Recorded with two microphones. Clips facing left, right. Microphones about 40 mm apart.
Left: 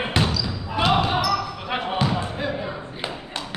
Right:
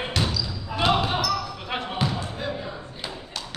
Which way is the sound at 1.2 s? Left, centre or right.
Centre.